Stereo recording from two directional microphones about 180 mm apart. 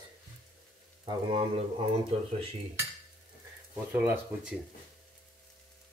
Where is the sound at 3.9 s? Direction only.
10° right (ahead or behind).